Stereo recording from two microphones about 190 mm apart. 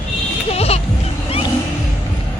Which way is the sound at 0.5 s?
35° left (ahead or behind).